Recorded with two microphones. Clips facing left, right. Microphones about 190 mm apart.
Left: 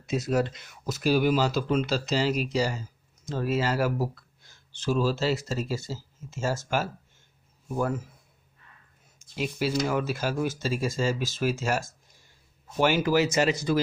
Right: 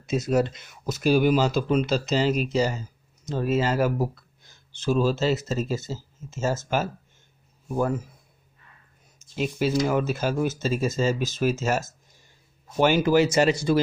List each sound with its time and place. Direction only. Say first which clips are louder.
0.0 s speech: right 3 dB; 20° right (ahead or behind)
9.4 s speech: right 4 dB; 20° right (ahead or behind)